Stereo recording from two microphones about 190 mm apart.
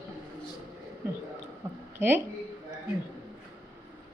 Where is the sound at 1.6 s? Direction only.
15° right (ahead or behind).